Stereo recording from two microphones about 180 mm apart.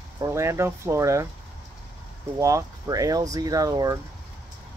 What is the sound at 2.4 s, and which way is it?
Speech, 20° right (ahead or behind).